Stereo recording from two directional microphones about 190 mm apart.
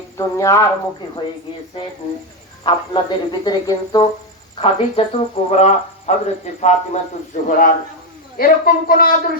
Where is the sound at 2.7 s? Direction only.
25° left (ahead or behind).